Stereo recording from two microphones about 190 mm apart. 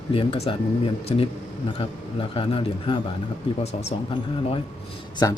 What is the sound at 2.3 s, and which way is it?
Speech, 25° left (ahead or behind).